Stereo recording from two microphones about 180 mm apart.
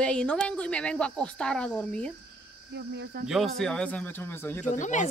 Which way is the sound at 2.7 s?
70° right (ahead or behind).